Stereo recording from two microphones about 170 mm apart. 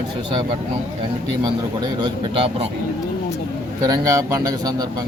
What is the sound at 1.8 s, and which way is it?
Speech, 30° right (ahead or behind).